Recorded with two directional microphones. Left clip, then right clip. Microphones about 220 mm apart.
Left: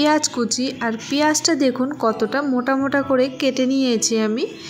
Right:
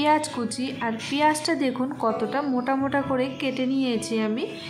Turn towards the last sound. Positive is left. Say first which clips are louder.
# left 6 dB
turn(degrees=20)  # may be behind; listen again after turning